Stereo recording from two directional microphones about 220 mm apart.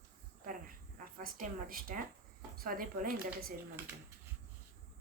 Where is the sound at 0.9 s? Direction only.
40° right (ahead or behind).